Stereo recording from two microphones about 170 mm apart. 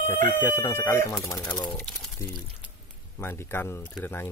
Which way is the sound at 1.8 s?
10° left (ahead or behind).